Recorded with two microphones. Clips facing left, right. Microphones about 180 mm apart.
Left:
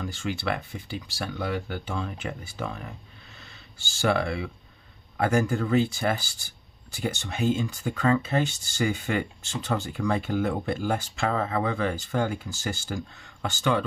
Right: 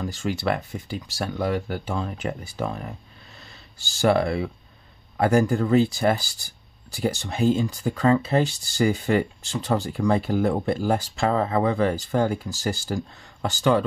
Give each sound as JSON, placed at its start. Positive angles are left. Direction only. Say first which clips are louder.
{"t": 0.0, "sound": "speech", "louder": "right 4 dB", "side_deg": -40}